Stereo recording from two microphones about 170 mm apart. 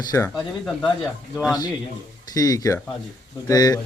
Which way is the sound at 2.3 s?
20° left (ahead or behind).